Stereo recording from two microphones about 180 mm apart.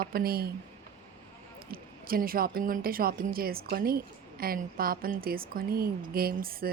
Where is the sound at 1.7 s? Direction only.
55° right (ahead or behind).